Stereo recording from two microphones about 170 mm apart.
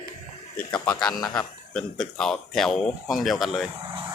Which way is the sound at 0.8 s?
10° left (ahead or behind).